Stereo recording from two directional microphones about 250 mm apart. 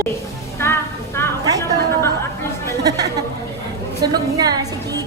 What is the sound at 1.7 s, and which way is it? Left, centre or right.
Chatter, centre.